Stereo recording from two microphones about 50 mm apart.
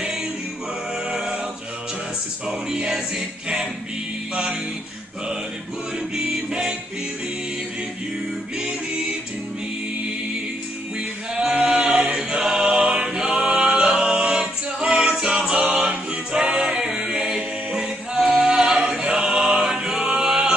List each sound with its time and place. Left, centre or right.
1.1 s music: centre
2.4 s music: centre
11.3 s chant: centre
12.2 s choir: centre
15.6 s music: right
16.3 s a capella: centre
18.4 s singing: centre
18.9 s choir: centre